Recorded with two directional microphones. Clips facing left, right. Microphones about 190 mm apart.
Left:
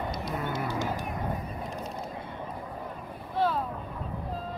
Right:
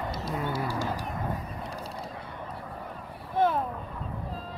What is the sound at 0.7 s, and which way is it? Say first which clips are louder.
Vehicle: even; 20° left (ahead or behind).